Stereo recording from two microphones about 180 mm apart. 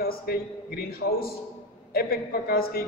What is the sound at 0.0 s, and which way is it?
A man's voice, 60° left (ahead or behind).